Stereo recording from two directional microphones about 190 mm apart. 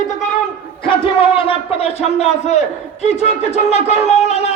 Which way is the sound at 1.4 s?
30° left (ahead or behind).